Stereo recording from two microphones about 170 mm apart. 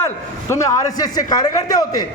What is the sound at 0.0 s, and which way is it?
A man's voice, 15° left (ahead or behind).